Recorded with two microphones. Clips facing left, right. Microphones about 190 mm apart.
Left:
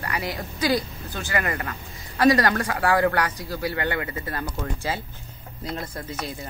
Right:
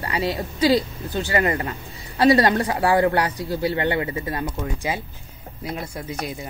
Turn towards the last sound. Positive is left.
turn(degrees=-15)  # may be behind; listen again after turning